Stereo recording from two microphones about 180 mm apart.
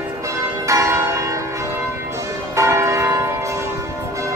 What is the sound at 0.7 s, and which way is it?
Church bell, 15° right (ahead or behind).